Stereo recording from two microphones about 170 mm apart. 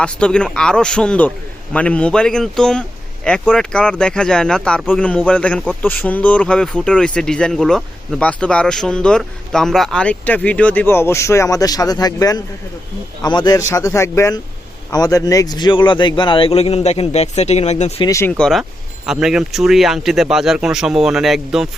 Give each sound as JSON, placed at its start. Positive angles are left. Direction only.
{"t": 0.0, "sound": "speech", "side_deg": 5}
{"t": 18.0, "sound": "speech", "side_deg": 20}
{"t": 18.3, "sound": "speech", "side_deg": 5}